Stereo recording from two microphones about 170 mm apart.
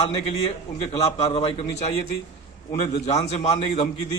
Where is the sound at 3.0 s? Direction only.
40° left (ahead or behind).